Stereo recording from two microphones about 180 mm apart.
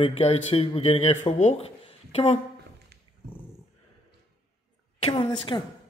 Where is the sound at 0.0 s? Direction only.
35° left (ahead or behind).